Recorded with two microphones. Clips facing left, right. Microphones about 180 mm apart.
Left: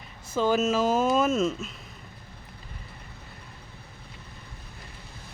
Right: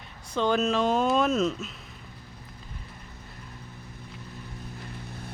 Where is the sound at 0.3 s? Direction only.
5° left (ahead or behind).